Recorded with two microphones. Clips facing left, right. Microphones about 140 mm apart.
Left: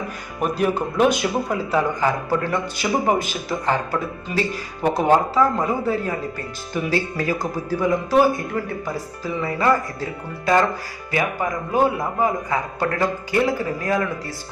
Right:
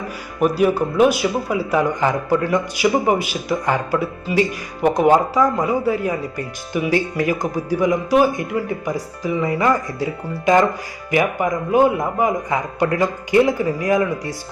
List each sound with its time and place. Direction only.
0.3 s speech: 5° right (ahead or behind)